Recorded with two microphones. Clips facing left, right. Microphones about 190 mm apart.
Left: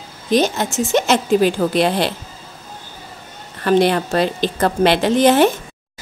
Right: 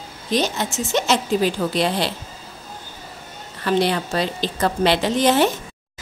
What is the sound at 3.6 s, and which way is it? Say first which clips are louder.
A woman's voice: left 5 dB; 50° left (ahead or behind).